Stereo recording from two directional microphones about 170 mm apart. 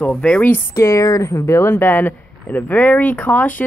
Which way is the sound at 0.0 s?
5° left (ahead or behind).